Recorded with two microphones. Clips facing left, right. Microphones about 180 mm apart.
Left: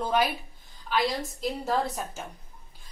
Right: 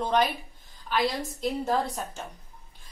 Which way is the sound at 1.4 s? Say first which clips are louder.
Right 2 dB; centre (ahead or behind).